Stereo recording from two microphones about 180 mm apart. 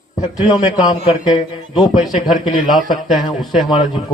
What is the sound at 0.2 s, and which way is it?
Speech, 30° left (ahead or behind).